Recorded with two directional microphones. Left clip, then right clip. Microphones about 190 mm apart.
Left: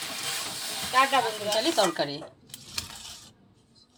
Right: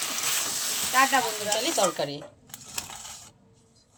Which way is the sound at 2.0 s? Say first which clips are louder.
Left 1 dB; 10° left (ahead or behind).